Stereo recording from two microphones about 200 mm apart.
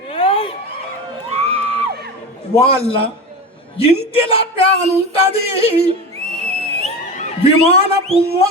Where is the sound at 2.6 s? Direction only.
30° left (ahead or behind).